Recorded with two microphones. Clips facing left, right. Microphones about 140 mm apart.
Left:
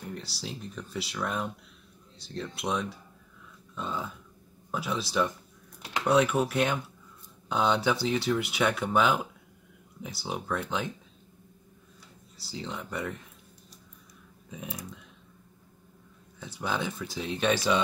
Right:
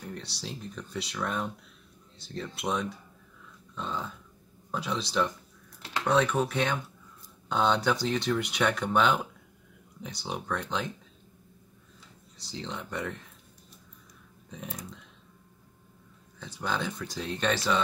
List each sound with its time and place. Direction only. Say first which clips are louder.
0.1 s speech: left 1 dB; centre (ahead or behind)
12.4 s speech: even; 5° left (ahead or behind)
14.5 s speech: left 1 dB; 5° left (ahead or behind)
16.3 s speech: left 1 dB; 5° left (ahead or behind)